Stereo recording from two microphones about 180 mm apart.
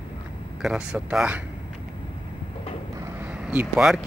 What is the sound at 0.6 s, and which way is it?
Speech, 5° right (ahead or behind).